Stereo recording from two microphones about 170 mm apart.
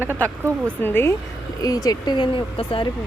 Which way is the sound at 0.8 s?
10° left (ahead or behind).